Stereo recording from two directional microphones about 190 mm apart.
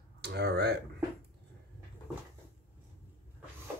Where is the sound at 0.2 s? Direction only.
60° right (ahead or behind).